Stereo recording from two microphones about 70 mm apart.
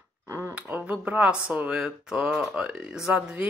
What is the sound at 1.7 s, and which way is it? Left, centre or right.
Speech, centre.